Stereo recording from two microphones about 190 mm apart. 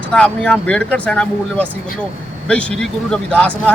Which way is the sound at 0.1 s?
5° left (ahead or behind).